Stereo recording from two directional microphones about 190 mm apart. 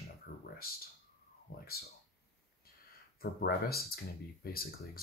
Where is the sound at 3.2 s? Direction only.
55° left (ahead or behind).